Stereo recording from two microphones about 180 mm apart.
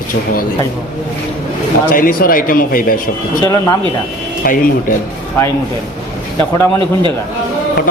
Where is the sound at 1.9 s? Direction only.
50° left (ahead or behind).